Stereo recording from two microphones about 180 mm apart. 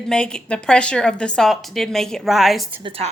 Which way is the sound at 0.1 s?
5° left (ahead or behind).